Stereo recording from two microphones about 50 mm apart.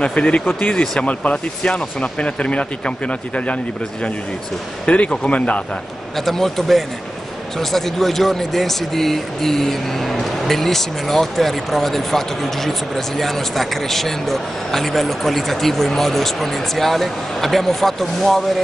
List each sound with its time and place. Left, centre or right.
0.0 s speech: left
4.8 s speech: left
6.1 s speech: centre